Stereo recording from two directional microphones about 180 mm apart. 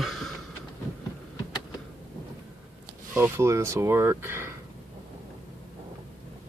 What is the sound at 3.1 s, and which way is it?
Speech, 15° right (ahead or behind).